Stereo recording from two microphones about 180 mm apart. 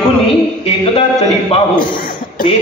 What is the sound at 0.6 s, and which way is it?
A man's voice, 35° left (ahead or behind).